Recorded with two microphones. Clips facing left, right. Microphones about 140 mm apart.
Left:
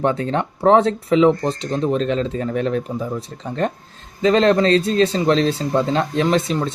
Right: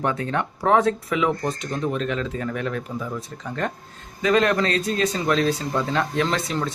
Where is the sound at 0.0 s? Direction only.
25° left (ahead or behind).